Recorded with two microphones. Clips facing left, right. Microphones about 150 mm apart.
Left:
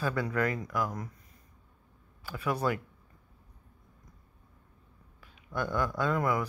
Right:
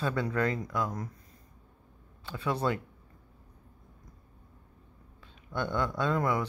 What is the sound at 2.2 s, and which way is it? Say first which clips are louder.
Speech: even; 25° right (ahead or behind).